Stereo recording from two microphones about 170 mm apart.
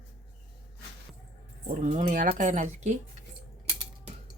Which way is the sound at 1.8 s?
45° right (ahead or behind).